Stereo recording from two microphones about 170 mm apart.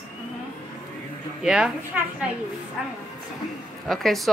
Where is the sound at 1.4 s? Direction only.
5° right (ahead or behind).